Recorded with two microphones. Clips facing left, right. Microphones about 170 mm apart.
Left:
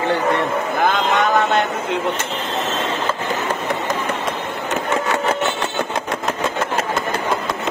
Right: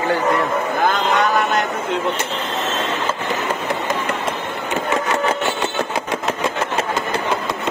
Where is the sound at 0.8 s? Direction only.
20° left (ahead or behind).